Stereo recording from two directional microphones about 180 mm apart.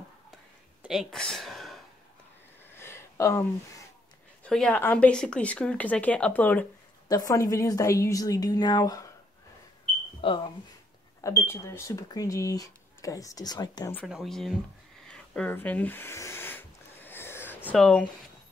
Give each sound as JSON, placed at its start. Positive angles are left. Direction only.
{"t": 0.8, "sound": "speech", "side_deg": 0}
{"t": 2.7, "sound": "a sound", "side_deg": 15}
{"t": 4.5, "sound": "speech", "side_deg": 5}
{"t": 7.1, "sound": "speech", "side_deg": 20}
{"t": 10.2, "sound": "speech", "side_deg": 25}
{"t": 11.1, "sound": "speech", "side_deg": 15}
{"t": 14.0, "sound": "speech", "side_deg": 0}
{"t": 15.0, "sound": "a sound", "side_deg": 5}
{"t": 17.6, "sound": "speech", "side_deg": 5}